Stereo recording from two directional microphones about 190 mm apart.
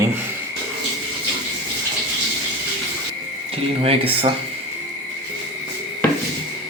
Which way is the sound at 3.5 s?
30° right (ahead or behind).